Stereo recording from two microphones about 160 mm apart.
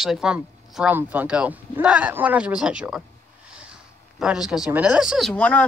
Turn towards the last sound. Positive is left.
turn(degrees=5)  # may be behind; listen again after turning